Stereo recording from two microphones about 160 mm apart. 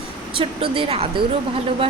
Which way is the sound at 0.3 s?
35° right (ahead or behind).